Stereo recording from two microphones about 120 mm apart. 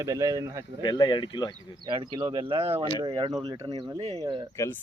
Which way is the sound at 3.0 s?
35° right (ahead or behind).